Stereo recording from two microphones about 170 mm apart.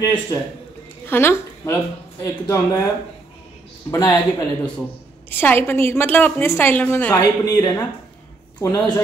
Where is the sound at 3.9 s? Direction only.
15° left (ahead or behind).